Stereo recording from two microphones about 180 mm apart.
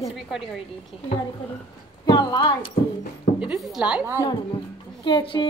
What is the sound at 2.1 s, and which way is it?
Speech, 25° left (ahead or behind).